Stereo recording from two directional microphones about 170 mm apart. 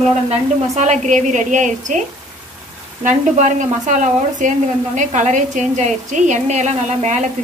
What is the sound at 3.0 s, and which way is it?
Speech, 45° right (ahead or behind).